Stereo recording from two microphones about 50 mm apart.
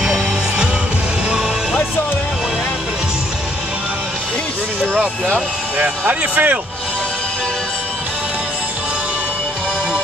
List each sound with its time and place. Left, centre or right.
0.0 s music: centre
5.8 s speech: right